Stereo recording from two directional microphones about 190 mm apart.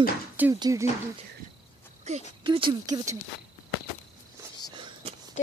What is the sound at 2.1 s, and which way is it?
Speech, 35° right (ahead or behind).